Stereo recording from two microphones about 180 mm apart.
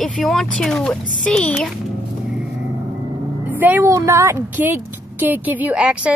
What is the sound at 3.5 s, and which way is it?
A woman's voice, 10° right (ahead or behind).